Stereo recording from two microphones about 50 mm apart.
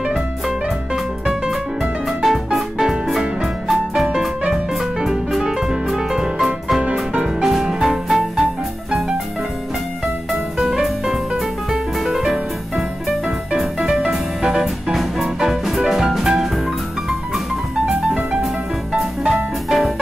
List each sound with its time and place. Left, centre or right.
1.5 s music: centre
5.4 s music: centre
6.8 s music: right
7.3 s music: centre
10.6 s music: centre
18.9 s music: centre